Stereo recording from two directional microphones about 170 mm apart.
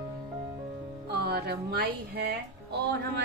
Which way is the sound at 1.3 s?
70° right (ahead or behind).